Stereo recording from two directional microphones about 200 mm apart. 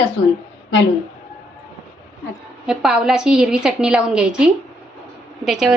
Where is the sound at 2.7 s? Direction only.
5° right (ahead or behind).